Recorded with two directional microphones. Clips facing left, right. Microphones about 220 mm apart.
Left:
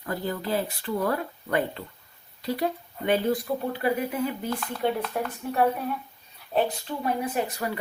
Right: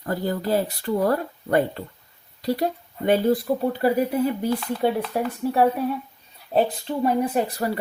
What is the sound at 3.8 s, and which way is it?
Speech, 40° right (ahead or behind).